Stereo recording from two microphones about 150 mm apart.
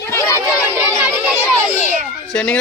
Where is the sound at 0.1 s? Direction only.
20° left (ahead or behind).